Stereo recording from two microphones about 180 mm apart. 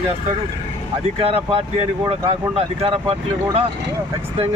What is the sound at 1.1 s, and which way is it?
Speech, 30° right (ahead or behind).